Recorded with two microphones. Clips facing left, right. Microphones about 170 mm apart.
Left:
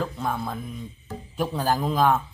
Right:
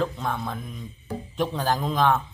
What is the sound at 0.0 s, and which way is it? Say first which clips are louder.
Speech: right 1 dB; 5° left (ahead or behind).